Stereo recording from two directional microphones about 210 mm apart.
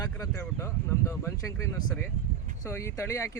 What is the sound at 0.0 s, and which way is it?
Speech, 15° left (ahead or behind).